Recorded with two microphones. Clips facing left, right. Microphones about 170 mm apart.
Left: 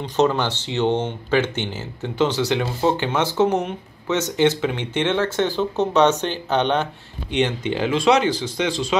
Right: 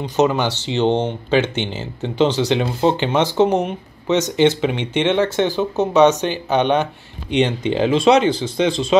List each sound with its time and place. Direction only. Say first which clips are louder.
0.0 s speech: right 2 dB; 10° right (ahead or behind)
0.7 s speech: right 3 dB; 25° right (ahead or behind)